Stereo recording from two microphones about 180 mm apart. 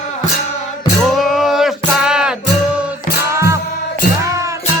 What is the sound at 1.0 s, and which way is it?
Music, centre (ahead or behind).